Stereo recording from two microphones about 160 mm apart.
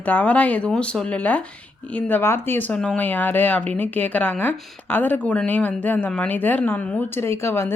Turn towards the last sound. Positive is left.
turn(degrees=15)  # may be behind; listen again after turning